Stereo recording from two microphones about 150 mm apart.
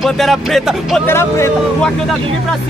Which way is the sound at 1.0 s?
15° left (ahead or behind).